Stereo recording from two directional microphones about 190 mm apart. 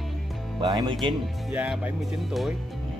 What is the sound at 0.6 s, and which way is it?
Speech, 20° right (ahead or behind).